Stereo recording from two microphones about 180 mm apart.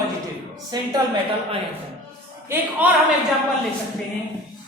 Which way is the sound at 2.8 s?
10° right (ahead or behind).